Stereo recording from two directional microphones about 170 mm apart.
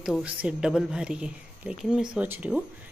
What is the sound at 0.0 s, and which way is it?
Speech, 5° right (ahead or behind).